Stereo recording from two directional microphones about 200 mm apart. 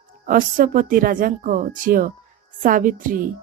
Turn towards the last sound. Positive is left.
turn(degrees=-45)  # may be behind; listen again after turning